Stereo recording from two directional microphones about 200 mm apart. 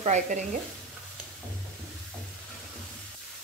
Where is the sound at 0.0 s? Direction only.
35° right (ahead or behind).